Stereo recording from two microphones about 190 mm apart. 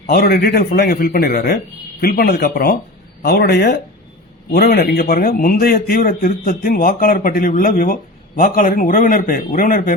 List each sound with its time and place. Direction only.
0.1 s a man's voice: 55° left (ahead or behind)